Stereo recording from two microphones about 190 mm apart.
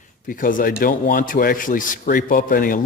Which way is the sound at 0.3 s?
45° left (ahead or behind).